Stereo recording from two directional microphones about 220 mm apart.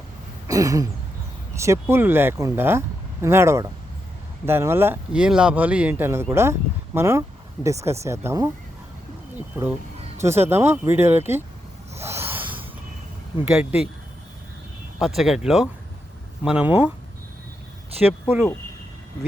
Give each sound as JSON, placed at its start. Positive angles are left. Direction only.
{"t": 0.4, "sound": "throat clearing", "side_deg": -15}
{"t": 1.5, "sound": "speech", "side_deg": -15}
{"t": 10.2, "sound": "speech", "side_deg": -10}
{"t": 11.9, "sound": "snort", "side_deg": -10}
{"t": 13.4, "sound": "speech", "side_deg": -5}
{"t": 14.9, "sound": "speech", "side_deg": 0}
{"t": 18.0, "sound": "speech", "side_deg": -10}